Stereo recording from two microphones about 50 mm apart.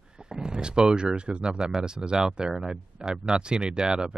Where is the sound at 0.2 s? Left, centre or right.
Centre.